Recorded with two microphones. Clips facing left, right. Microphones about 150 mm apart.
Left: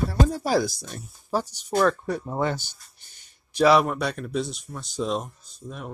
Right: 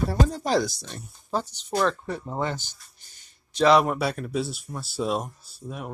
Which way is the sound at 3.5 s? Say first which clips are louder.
Even; 10° left (ahead or behind).